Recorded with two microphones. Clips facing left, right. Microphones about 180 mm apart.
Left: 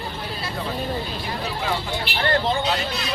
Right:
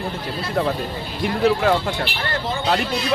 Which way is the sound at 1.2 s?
70° right (ahead or behind).